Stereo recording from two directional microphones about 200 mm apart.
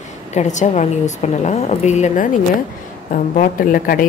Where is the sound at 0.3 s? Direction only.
35° left (ahead or behind).